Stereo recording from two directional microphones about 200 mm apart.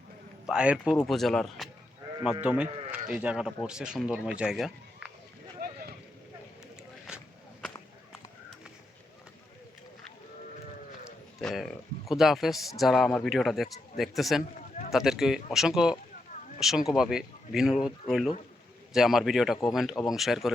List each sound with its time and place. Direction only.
0.4 s speech: 5° right (ahead or behind)
5.5 s a sound: 45° right (ahead or behind)
11.3 s speech: centre (ahead or behind)